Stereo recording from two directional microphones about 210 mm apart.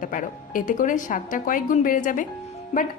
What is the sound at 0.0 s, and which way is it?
Speech, 40° left (ahead or behind).